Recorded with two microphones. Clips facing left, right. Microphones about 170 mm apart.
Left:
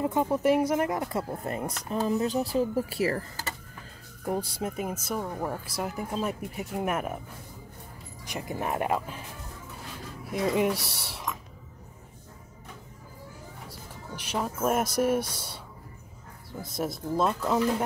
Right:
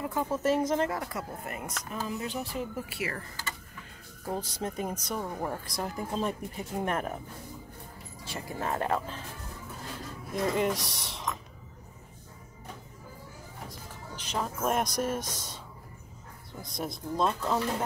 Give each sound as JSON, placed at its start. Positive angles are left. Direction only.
{"t": 0.0, "sound": "speech", "side_deg": 20}
{"t": 4.3, "sound": "speech", "side_deg": 10}
{"t": 8.3, "sound": "speech", "side_deg": 15}
{"t": 10.3, "sound": "speech", "side_deg": 10}
{"t": 13.7, "sound": "speech", "side_deg": 10}
{"t": 16.6, "sound": "speech", "side_deg": 5}